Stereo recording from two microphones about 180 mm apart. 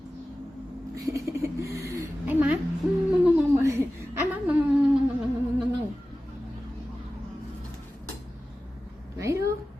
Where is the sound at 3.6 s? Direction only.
15° right (ahead or behind).